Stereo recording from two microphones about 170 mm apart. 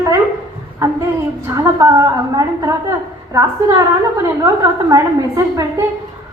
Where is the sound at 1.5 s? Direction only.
15° right (ahead or behind).